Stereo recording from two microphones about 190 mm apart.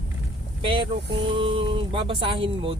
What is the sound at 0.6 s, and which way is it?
Speech, 25° right (ahead or behind).